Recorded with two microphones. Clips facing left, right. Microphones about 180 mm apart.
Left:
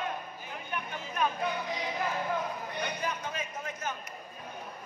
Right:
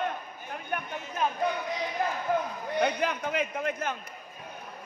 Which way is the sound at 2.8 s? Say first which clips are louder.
Right 9 dB; 75° right (ahead or behind).